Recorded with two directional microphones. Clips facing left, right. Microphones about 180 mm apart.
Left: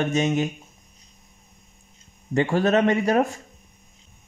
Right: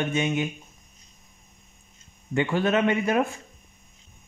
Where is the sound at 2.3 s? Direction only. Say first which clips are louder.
Left 3 dB; 40° left (ahead or behind).